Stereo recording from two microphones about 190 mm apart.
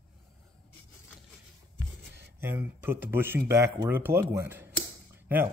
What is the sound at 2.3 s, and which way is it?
Speech, 10° right (ahead or behind).